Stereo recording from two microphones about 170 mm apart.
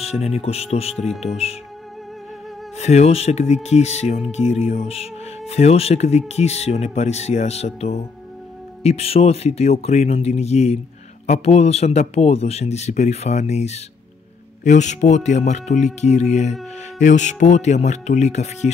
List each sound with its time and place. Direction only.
0.0 s speech: 40° left (ahead or behind)
2.8 s speech: 40° left (ahead or behind)